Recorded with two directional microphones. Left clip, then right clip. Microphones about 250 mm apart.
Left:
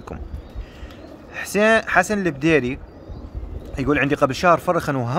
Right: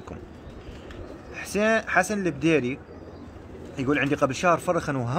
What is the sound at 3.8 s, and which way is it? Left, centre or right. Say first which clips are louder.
Speech: left 5 dB; centre.